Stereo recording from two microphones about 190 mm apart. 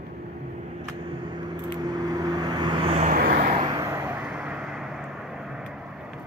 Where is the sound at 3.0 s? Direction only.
50° right (ahead or behind).